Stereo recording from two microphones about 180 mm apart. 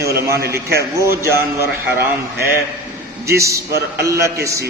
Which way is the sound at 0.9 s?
15° right (ahead or behind).